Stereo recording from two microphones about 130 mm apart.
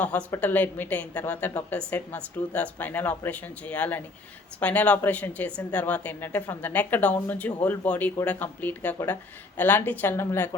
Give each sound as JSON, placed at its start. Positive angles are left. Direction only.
{"t": 0.0, "sound": "speech", "side_deg": 10}